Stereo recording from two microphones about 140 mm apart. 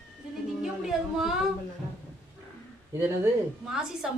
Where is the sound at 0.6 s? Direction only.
5° right (ahead or behind).